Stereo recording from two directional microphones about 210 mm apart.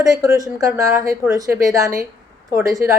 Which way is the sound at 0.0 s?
15° right (ahead or behind).